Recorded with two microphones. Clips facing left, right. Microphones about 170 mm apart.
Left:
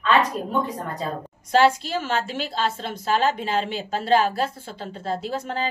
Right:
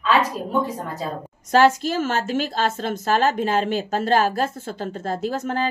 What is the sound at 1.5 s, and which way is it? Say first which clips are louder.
A woman's voice: right 2 dB; 45° right (ahead or behind).